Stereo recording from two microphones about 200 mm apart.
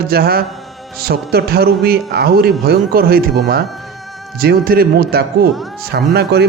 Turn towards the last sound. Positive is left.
turn(degrees=-55)  # may be behind; listen again after turning